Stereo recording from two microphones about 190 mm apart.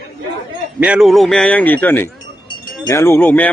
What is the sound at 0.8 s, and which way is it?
A man's voice, 5° right (ahead or behind).